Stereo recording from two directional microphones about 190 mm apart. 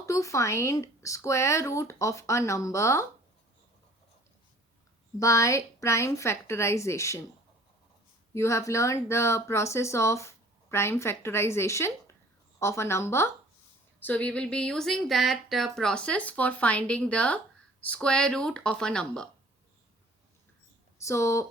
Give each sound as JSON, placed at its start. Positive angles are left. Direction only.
{"t": 0.0, "sound": "speech", "side_deg": 15}
{"t": 5.2, "sound": "speech", "side_deg": 15}
{"t": 8.3, "sound": "speech", "side_deg": 15}
{"t": 21.0, "sound": "speech", "side_deg": 15}